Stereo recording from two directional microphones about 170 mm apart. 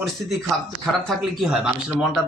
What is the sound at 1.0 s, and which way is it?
Speech, centre (ahead or behind).